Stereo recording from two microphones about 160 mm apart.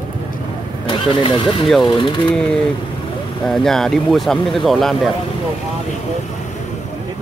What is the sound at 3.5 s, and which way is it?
Speech, centre (ahead or behind).